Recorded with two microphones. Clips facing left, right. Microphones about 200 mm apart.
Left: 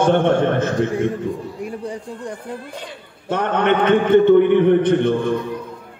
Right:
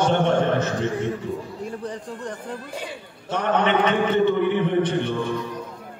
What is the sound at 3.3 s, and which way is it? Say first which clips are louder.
A man's voice: left 3 dB; 55° left (ahead or behind).